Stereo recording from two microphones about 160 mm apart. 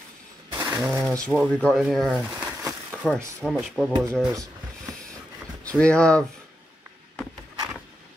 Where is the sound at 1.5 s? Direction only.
5° left (ahead or behind).